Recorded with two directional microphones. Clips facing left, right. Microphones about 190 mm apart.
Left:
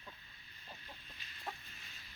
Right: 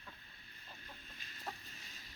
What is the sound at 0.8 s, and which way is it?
Chicken, 45° right (ahead or behind).